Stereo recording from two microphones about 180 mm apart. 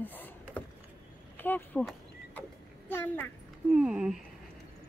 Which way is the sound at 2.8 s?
10° left (ahead or behind).